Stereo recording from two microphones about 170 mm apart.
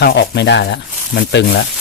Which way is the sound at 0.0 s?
75° left (ahead or behind).